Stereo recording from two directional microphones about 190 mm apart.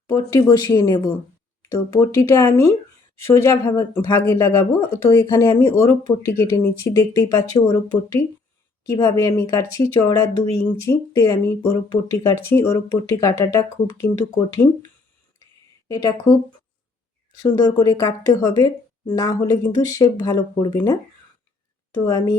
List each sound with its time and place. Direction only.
0.1 s speech: 15° left (ahead or behind)
15.9 s speech: 20° left (ahead or behind)
17.5 s speech: 20° left (ahead or behind)
22.0 s speech: 20° left (ahead or behind)